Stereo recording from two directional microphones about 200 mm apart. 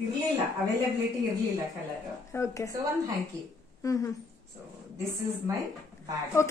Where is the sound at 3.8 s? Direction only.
15° left (ahead or behind).